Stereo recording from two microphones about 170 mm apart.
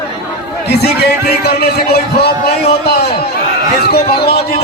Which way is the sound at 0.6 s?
70° left (ahead or behind).